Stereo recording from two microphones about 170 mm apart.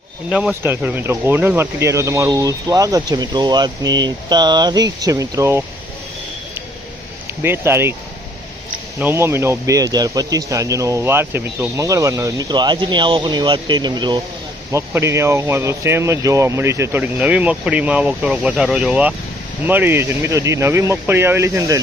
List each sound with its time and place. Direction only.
0.3 s speech: 5° right (ahead or behind)
7.4 s speech: 15° right (ahead or behind)
9.0 s speech: 15° right (ahead or behind)